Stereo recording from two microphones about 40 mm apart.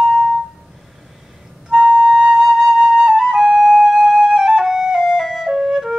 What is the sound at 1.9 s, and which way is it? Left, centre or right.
Flute, centre.